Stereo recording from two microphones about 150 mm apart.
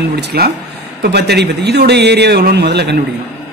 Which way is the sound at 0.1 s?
90° right.